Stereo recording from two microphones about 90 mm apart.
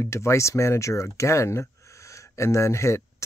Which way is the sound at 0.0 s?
30° left (ahead or behind).